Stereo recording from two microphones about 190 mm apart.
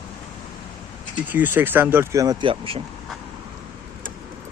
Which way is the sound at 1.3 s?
10° right (ahead or behind).